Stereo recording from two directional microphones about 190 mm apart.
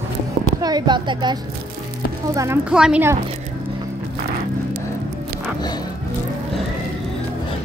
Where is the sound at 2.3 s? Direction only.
15° right (ahead or behind).